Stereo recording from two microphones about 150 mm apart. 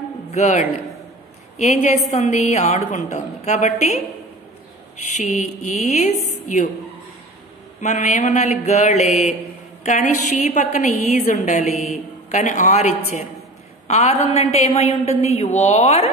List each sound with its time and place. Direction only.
0.3 s a man's voice: 50° left (ahead or behind)
5.1 s a woman's voice: 50° left (ahead or behind)
7.8 s a woman's voice: 50° left (ahead or behind)